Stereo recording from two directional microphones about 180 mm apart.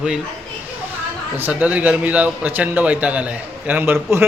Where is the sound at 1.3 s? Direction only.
10° right (ahead or behind).